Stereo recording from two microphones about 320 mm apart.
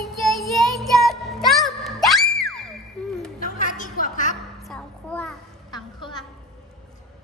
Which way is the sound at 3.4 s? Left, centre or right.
Left.